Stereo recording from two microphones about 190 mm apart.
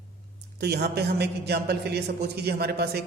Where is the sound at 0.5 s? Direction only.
60° right (ahead or behind).